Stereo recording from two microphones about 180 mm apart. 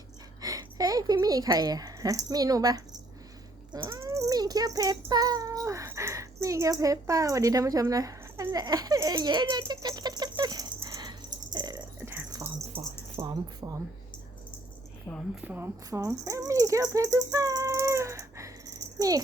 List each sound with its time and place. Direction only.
0.4 s a woman's voice: 20° right (ahead or behind)
3.7 s cat: 20° right (ahead or behind)
12.4 s a sound: 30° right (ahead or behind)
15.1 s speech: 5° right (ahead or behind)